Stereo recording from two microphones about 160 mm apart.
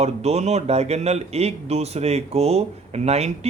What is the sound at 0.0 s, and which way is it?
Speech, 40° right (ahead or behind).